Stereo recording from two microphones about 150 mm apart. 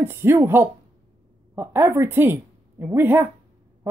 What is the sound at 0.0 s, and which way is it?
A woman's voice, 15° right (ahead or behind).